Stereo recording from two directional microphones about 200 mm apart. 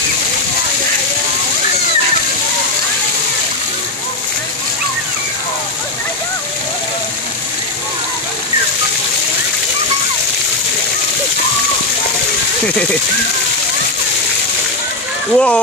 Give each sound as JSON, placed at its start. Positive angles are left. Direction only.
{"t": 15.3, "sound": "speech", "side_deg": 5}